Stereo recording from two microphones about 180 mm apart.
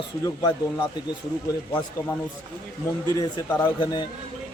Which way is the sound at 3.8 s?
25° left (ahead or behind).